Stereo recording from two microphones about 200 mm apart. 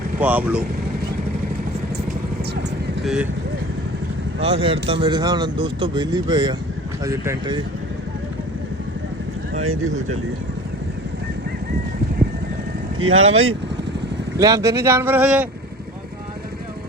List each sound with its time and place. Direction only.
0.2 s speech: 10° right (ahead or behind)
3.0 s speech: 5° right (ahead or behind)
4.4 s speech: 25° right (ahead or behind)
9.6 s speech: 90° right
13.0 s speech: 30° right (ahead or behind)
14.3 s speech: 15° right (ahead or behind)